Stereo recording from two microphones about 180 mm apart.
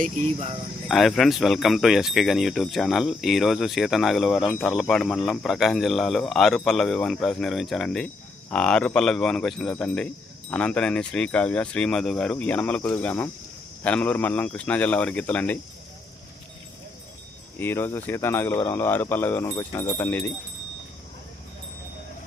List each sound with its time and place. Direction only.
0.0 s speech: 40° right (ahead or behind)
0.9 s speech: centre (ahead or behind)
17.6 s speech: 15° left (ahead or behind)